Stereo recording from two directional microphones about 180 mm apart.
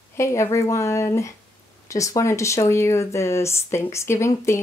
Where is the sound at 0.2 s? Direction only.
15° left (ahead or behind).